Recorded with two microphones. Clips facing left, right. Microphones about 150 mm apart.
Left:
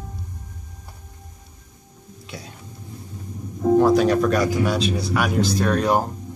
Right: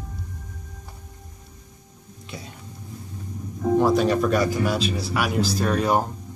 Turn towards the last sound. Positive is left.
turn(degrees=0)  # may be behind; listen again after turning